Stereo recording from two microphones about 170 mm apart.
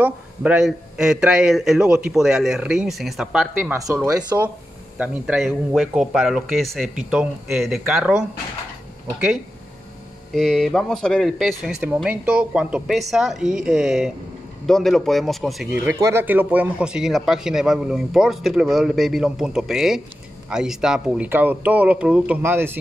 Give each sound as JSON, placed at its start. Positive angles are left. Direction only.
{"t": 0.0, "sound": "speech", "side_deg": -5}
{"t": 3.8, "sound": "speech", "side_deg": -15}
{"t": 10.3, "sound": "speech", "side_deg": 0}